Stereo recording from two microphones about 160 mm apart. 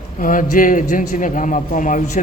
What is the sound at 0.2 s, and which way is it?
A man's voice, 60° left (ahead or behind).